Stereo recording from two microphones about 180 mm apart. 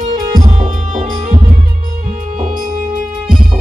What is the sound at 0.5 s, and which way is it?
Music, 40° right (ahead or behind).